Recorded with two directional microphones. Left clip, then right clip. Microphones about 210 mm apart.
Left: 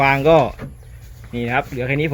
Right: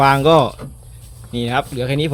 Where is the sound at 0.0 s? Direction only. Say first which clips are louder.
Right 1 dB; 20° right (ahead or behind).